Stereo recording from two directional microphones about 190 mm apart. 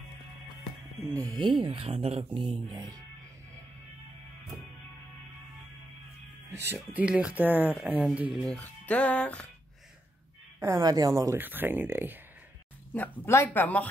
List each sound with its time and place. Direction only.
1.3 s speech: 25° right (ahead or behind)
6.5 s speech: 10° right (ahead or behind); by 9.5 s 5° left (ahead or behind)
10.6 s speech: 20° right (ahead or behind)
12.9 s speech: 10° left (ahead or behind)